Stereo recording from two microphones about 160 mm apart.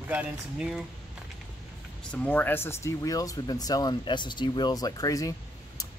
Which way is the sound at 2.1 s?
10° left (ahead or behind).